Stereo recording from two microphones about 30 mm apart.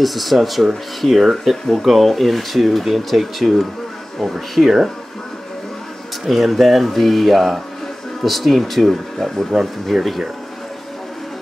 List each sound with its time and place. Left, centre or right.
0.0 s speech: centre
4.6 s speech: right
6.2 s speech: centre